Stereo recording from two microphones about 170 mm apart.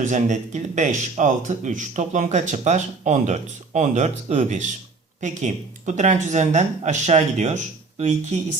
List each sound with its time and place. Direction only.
0.0 s speech: 45° right (ahead or behind)